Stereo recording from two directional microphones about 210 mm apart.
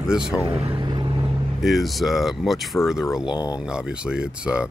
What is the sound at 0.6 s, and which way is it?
Vehicle, 25° right (ahead or behind).